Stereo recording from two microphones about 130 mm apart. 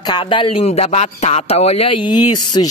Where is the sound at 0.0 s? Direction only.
35° left (ahead or behind).